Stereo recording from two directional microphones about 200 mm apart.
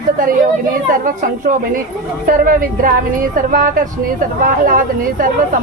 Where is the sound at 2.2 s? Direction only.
45° right (ahead or behind).